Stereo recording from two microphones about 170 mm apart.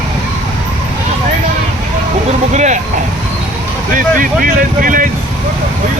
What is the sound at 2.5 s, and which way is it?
Speech, 45° right (ahead or behind).